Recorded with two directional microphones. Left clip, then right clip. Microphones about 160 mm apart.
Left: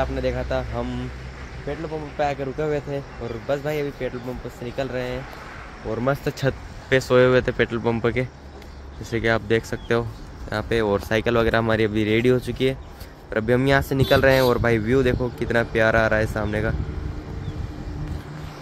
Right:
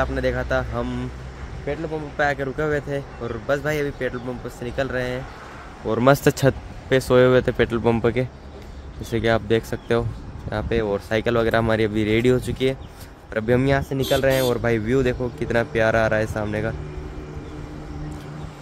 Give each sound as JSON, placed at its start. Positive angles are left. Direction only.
{"t": 0.0, "sound": "speech", "side_deg": -10}
{"t": 2.1, "sound": "speech", "side_deg": -10}
{"t": 5.9, "sound": "speech", "side_deg": -70}
{"t": 6.9, "sound": "speech", "side_deg": -15}
{"t": 13.7, "sound": "speech", "side_deg": 20}
{"t": 14.7, "sound": "speech", "side_deg": 10}